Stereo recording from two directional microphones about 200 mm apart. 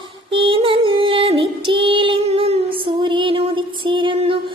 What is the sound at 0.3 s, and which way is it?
Female singing, 25° right (ahead or behind).